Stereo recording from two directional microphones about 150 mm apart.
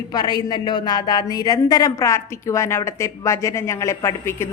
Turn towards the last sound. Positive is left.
turn(degrees=15)  # may be behind; listen again after turning